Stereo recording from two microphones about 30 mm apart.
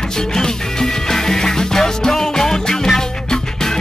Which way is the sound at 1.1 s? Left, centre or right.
Centre.